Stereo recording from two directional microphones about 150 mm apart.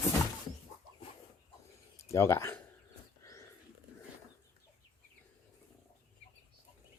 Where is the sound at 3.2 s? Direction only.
20° left (ahead or behind).